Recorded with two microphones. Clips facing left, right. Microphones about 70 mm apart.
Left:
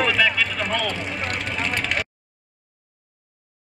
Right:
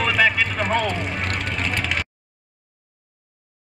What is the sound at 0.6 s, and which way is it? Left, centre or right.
Vehicle, right.